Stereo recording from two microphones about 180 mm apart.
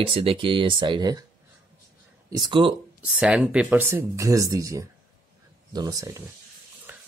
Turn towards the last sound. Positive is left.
turn(degrees=-10)  # may be behind; listen again after turning